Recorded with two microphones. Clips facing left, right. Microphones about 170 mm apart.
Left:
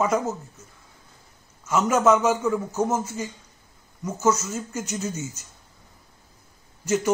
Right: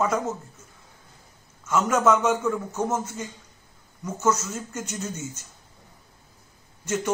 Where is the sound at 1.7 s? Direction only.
5° left (ahead or behind).